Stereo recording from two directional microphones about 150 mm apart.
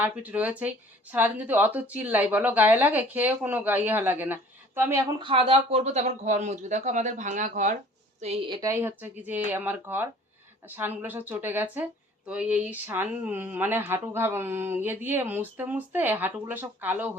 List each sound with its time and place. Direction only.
0.0 s speech: 10° right (ahead or behind)
5.2 s speech: 40° right (ahead or behind); by 7.8 s 55° right (ahead or behind)
8.2 s speech: 45° right (ahead or behind)
8.4 s a woman's voice: 30° right (ahead or behind)
8.7 s speech: 15° right (ahead or behind)